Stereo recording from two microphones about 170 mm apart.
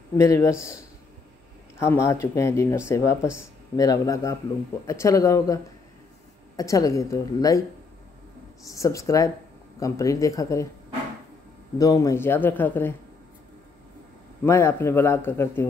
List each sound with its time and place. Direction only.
0.2 s a man's voice: 20° left (ahead or behind)
1.8 s a man's voice: 15° left (ahead or behind)
8.6 s speech: 20° left (ahead or behind)
11.8 s a man's voice: 20° left (ahead or behind)
14.4 s a man's voice: 15° left (ahead or behind)